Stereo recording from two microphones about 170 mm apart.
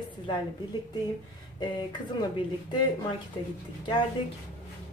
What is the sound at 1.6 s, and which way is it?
Speech, 25° left (ahead or behind).